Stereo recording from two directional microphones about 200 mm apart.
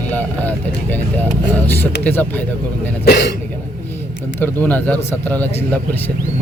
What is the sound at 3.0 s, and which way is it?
Speech, 55° left (ahead or behind).